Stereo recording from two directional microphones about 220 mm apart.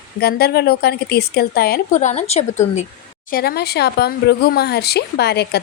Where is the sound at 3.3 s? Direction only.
45° left (ahead or behind).